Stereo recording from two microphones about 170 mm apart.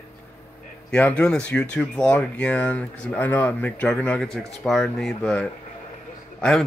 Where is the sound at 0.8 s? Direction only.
5° left (ahead or behind).